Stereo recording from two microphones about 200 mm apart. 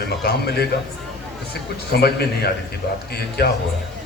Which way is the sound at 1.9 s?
50° left (ahead or behind).